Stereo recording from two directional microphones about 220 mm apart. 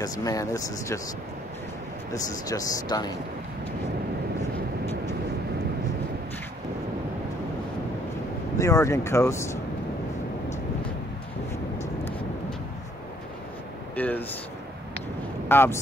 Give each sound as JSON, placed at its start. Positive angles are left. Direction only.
{"t": 0.0, "sound": "speech", "side_deg": 15}
{"t": 2.1, "sound": "speech", "side_deg": 15}
{"t": 8.5, "sound": "speech", "side_deg": 15}
{"t": 11.8, "sound": "vehicle", "side_deg": 10}
{"t": 13.9, "sound": "a sound", "side_deg": 5}
{"t": 15.4, "sound": "speech", "side_deg": 10}